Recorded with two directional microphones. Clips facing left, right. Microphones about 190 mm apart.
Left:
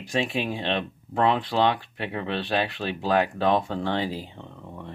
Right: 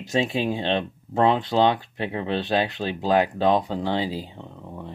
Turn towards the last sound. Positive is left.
turn(degrees=-5)  # may be behind; listen again after turning